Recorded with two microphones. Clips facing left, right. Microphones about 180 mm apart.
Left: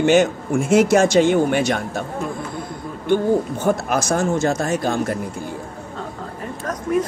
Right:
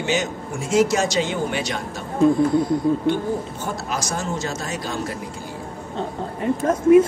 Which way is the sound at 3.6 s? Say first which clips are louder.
Left 8 dB; 55° left (ahead or behind).